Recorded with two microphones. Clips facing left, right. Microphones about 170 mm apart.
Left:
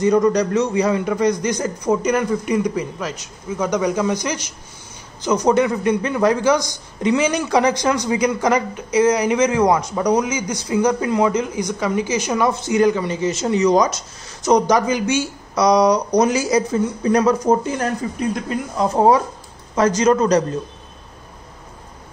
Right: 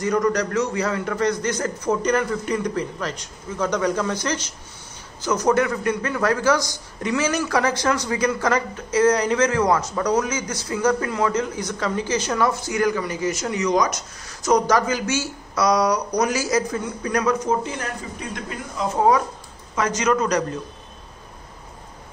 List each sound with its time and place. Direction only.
0.0 s a man's voice: 20° left (ahead or behind)
19.7 s a man's voice: 35° left (ahead or behind)